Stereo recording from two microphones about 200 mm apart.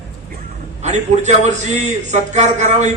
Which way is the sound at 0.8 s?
35° right (ahead or behind).